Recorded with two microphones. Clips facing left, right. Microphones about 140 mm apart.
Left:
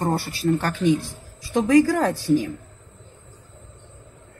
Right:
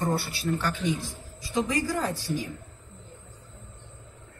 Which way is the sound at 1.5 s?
65° left (ahead or behind).